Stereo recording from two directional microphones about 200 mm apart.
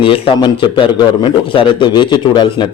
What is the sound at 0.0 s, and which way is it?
A man's voice, 25° left (ahead or behind).